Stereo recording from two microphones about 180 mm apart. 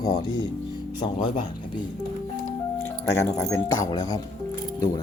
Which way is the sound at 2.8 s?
15° left (ahead or behind).